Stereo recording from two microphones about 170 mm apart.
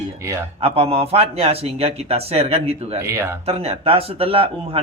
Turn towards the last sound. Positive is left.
turn(degrees=-35)  # may be behind; listen again after turning